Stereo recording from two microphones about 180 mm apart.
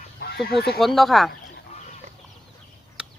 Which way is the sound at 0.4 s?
60° left (ahead or behind).